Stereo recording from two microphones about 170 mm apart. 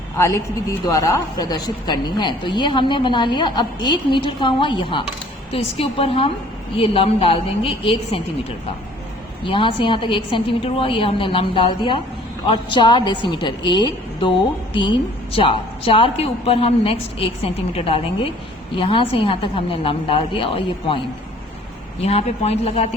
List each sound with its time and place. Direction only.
0.9 s a woman's voice: 20° left (ahead or behind)
9.4 s a woman's voice: 30° left (ahead or behind)
22.0 s a woman's voice: 35° left (ahead or behind)